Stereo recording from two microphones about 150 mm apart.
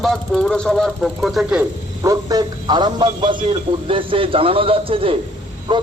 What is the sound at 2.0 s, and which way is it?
A man's voice, 25° right (ahead or behind).